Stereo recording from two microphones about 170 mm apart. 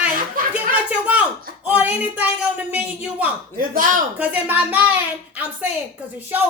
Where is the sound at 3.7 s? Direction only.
55° right (ahead or behind).